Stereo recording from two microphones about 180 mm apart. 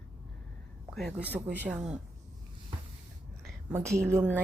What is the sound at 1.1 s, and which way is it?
Speech, 10° right (ahead or behind).